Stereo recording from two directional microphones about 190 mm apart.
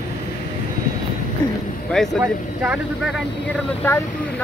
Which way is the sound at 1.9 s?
Centre (ahead or behind).